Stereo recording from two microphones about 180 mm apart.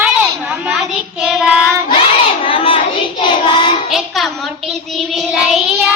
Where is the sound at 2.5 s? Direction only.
30° left (ahead or behind).